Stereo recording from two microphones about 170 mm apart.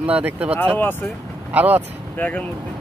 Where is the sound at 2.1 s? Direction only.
10° left (ahead or behind).